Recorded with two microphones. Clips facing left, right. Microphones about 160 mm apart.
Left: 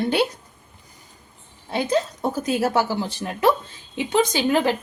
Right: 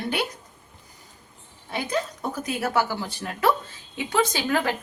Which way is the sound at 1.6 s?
30° left (ahead or behind).